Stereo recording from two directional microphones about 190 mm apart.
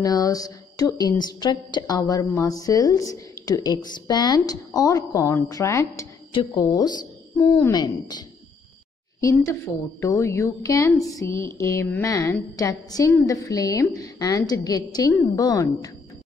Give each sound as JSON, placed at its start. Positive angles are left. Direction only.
{"t": 0.0, "sound": "a woman's voice", "side_deg": 20}